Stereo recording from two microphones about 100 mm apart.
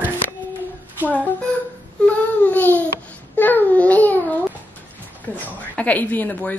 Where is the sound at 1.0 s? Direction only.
15° left (ahead or behind).